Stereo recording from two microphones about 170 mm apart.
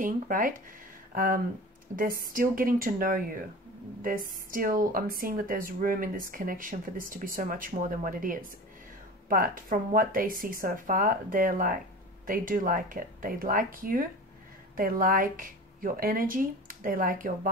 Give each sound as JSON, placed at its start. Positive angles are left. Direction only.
{"t": 0.0, "sound": "speech", "side_deg": -55}
{"t": 4.5, "sound": "speech", "side_deg": -55}